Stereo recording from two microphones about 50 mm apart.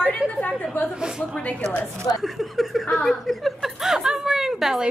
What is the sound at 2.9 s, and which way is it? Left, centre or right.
Chuckle, centre.